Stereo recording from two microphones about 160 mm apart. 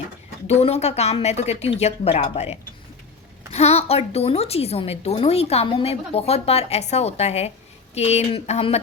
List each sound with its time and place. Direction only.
0.4 s a woman's voice: 40° left (ahead or behind)